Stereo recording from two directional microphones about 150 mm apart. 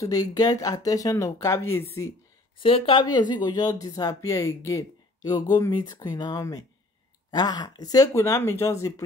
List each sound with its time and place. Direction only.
0.0 s speech: 25° left (ahead or behind)
2.6 s speech: 35° left (ahead or behind); by 9.0 s 20° left (ahead or behind)